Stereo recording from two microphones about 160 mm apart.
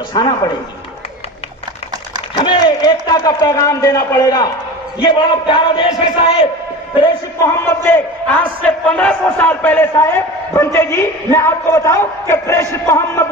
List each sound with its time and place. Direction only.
0.1 s a man's voice: 25° left (ahead or behind)
2.3 s a man's voice: 25° left (ahead or behind)
7.6 s a man's voice: 10° left (ahead or behind)